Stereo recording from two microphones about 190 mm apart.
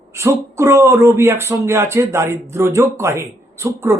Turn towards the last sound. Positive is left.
turn(degrees=-15)  # may be behind; listen again after turning